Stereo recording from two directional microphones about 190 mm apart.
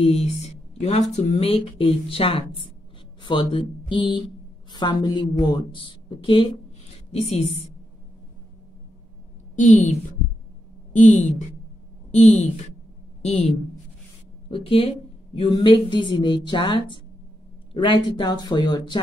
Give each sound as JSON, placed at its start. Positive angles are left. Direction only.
{"t": 0.0, "sound": "a woman's voice", "side_deg": 30}
{"t": 9.6, "sound": "a woman's voice", "side_deg": 40}